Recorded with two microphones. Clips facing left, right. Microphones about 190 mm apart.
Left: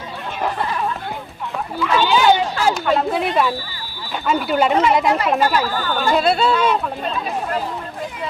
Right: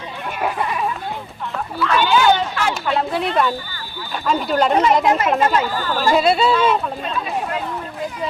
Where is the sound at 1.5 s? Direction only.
15° left (ahead or behind).